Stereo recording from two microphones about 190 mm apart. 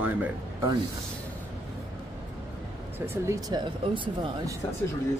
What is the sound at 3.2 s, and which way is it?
Speech, 20° right (ahead or behind).